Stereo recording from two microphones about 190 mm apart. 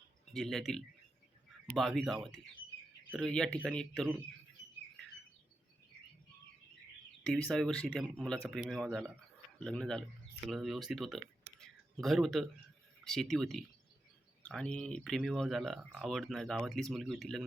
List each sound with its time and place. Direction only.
0.3 s speech: centre (ahead or behind)
7.5 s speech: centre (ahead or behind)
11.6 s a sound: centre (ahead or behind)
13.1 s speech: centre (ahead or behind)